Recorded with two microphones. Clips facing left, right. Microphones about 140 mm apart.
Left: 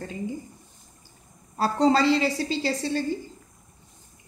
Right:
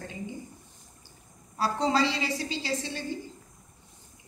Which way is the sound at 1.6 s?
45° left (ahead or behind).